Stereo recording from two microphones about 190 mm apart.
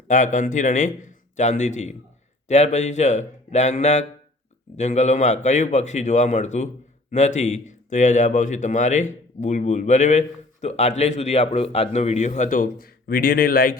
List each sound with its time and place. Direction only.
0.1 s speech: 40° left (ahead or behind)